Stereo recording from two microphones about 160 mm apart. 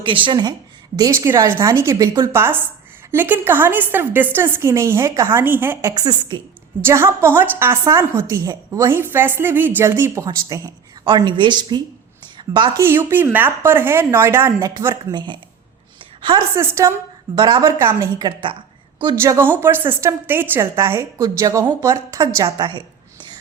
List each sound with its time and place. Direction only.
0.0 s a woman's voice: 30° right (ahead or behind)
12.8 s a woman's voice: 15° right (ahead or behind)
16.6 s a woman's voice: 15° right (ahead or behind)
17.3 s a woman's voice: 25° right (ahead or behind)
17.7 s a woman's voice: 15° right (ahead or behind)
18.2 s a woman's voice: 30° right (ahead or behind)
19.2 s a woman's voice: 15° right (ahead or behind)